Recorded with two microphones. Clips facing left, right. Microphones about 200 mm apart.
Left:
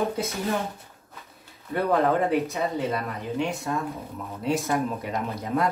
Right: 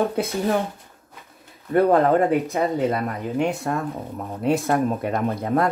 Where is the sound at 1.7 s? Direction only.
50° right (ahead or behind).